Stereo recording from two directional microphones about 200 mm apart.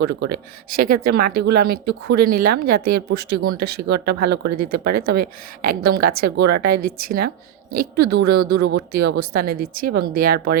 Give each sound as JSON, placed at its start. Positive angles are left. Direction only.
{"t": 0.0, "sound": "speech", "side_deg": -55}